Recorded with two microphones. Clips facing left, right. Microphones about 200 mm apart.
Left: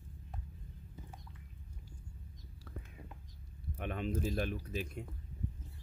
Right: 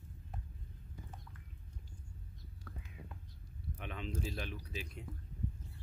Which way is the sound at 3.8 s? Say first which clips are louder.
Left 6 dB; 50° left (ahead or behind).